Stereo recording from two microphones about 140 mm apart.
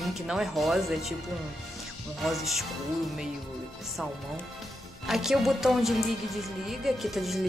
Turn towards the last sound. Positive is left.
turn(degrees=0)  # may be behind; listen again after turning